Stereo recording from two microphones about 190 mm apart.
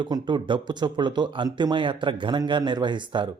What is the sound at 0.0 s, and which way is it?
Speech, 25° right (ahead or behind).